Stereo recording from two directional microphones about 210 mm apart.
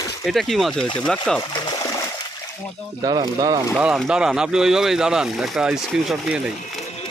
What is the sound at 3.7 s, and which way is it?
Speech, centre (ahead or behind).